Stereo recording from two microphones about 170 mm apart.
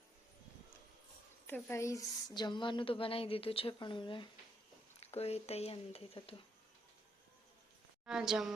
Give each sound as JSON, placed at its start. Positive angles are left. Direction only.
{"t": 1.5, "sound": "a woman's voice", "side_deg": 10}
{"t": 8.0, "sound": "a woman's voice", "side_deg": -5}